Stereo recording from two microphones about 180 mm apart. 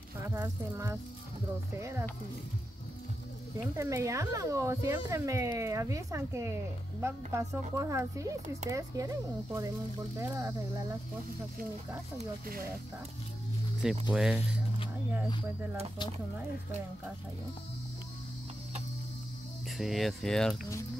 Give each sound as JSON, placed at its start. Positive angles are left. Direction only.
{"t": 0.2, "sound": "speech", "side_deg": -15}
{"t": 3.7, "sound": "speech", "side_deg": -15}
{"t": 13.8, "sound": "speech", "side_deg": -5}
{"t": 19.8, "sound": "speech", "side_deg": 0}